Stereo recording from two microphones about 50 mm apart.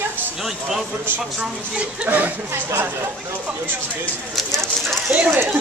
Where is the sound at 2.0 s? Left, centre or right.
Right.